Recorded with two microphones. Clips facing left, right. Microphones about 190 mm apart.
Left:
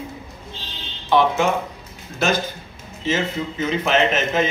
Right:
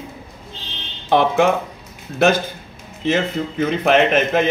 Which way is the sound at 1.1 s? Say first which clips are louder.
Right 2 dB; 55° right (ahead or behind).